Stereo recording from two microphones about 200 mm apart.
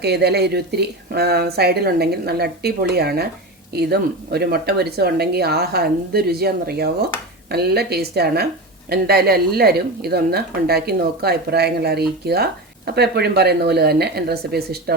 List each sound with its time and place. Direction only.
0.0 s speech: 55° right (ahead or behind)